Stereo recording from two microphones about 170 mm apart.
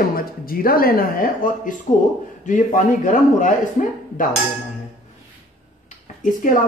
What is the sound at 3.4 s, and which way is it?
Speech, 50° left (ahead or behind).